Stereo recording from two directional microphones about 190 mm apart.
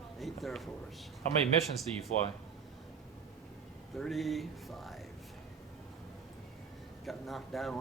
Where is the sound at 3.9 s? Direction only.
Centre (ahead or behind).